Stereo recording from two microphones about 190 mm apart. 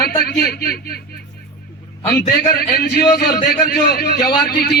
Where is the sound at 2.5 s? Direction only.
55° left (ahead or behind).